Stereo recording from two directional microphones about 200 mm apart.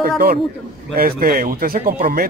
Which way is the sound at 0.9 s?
50° right (ahead or behind).